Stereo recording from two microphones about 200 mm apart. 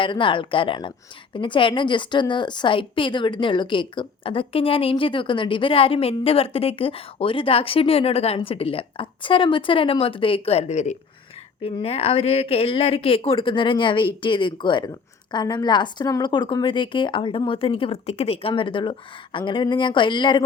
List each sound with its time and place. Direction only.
0.0 s a woman's voice: 25° left (ahead or behind)